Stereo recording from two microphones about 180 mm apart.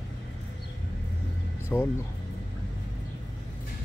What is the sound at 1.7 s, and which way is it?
Speech, 10° left (ahead or behind).